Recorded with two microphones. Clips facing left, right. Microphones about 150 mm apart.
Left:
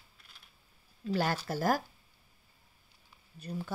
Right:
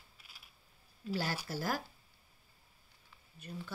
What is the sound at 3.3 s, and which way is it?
Speech, 40° left (ahead or behind).